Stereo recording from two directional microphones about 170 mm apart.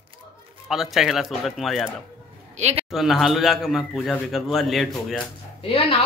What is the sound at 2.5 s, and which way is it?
Speech, 40° right (ahead or behind).